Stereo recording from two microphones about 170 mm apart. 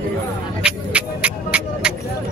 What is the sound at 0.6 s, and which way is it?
Music, 5° right (ahead or behind).